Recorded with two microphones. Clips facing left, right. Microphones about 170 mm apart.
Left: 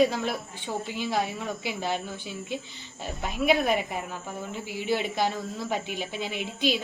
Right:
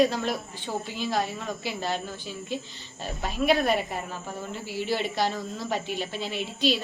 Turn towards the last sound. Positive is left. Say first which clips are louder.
# right 1 dB
turn(degrees=10)  # may be behind; listen again after turning